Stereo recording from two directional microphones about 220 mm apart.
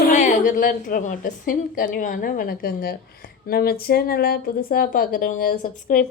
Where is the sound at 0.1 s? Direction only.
30° left (ahead or behind).